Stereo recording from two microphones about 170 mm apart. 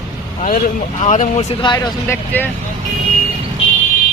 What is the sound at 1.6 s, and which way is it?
Speech, 25° left (ahead or behind).